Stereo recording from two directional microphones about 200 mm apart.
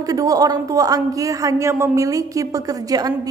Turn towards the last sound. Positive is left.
turn(degrees=-20)  # may be behind; listen again after turning